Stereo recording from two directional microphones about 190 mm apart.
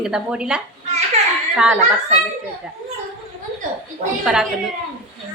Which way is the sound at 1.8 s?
35° right (ahead or behind).